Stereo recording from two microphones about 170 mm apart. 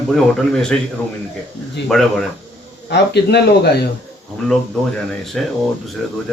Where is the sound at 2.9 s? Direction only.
80° left.